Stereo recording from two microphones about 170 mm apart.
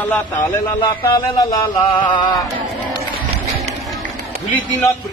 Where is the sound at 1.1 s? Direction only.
25° left (ahead or behind).